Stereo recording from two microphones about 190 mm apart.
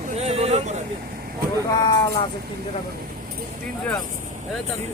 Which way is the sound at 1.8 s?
25° left (ahead or behind).